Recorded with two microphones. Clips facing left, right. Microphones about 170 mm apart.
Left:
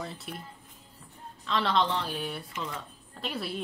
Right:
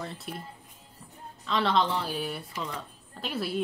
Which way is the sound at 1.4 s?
Centre (ahead or behind).